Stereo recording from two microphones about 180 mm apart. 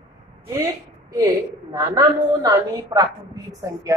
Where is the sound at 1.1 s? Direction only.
20° right (ahead or behind).